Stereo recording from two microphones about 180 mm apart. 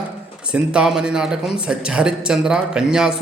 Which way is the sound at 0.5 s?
5° right (ahead or behind).